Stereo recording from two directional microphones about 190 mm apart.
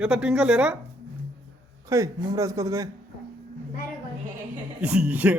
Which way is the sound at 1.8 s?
15° right (ahead or behind).